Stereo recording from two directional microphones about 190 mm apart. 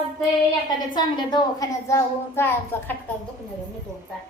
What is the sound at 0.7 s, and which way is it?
A child's voice, 20° left (ahead or behind).